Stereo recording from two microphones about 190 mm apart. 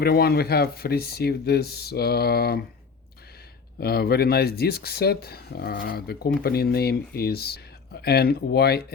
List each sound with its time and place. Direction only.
0.0 s speech: 55° left (ahead or behind)
3.8 s speech: 55° left (ahead or behind)